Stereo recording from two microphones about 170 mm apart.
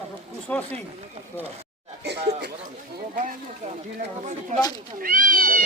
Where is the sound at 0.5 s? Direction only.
10° left (ahead or behind).